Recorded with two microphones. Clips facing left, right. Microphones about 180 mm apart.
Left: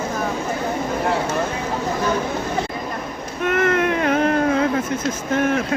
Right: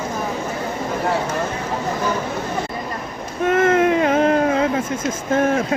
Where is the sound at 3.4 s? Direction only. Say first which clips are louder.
Right 3 dB; 25° right (ahead or behind).